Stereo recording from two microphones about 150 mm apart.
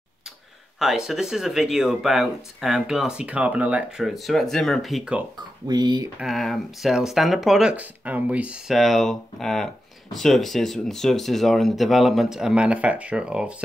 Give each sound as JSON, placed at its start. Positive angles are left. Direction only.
{"t": 0.7, "sound": "speech", "side_deg": 0}
{"t": 5.7, "sound": "speech", "side_deg": -25}
{"t": 6.1, "sound": "speech", "side_deg": 0}